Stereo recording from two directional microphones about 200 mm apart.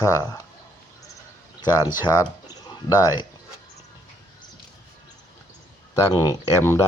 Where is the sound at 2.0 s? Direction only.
20° left (ahead or behind).